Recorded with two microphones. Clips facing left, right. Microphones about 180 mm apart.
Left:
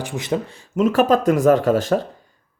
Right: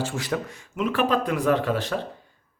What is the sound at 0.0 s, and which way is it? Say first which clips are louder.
Speech: left 4 dB; 20° left (ahead or behind).